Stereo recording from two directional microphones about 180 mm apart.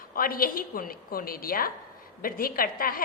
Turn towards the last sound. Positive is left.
turn(degrees=55)  # may be behind; listen again after turning